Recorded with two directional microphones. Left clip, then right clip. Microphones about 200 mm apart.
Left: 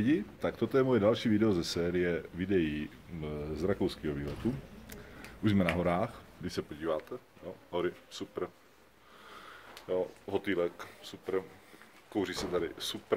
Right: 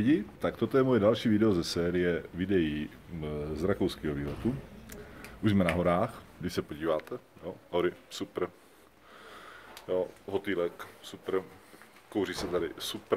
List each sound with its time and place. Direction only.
0.0 s speech: centre (ahead or behind)
4.8 s a sound: centre (ahead or behind)
5.9 s speech: 20° right (ahead or behind); by 8.5 s 35° right (ahead or behind)
9.3 s sniff: 5° right (ahead or behind)
10.3 s speech: 25° left (ahead or behind)
12.1 s speech: centre (ahead or behind)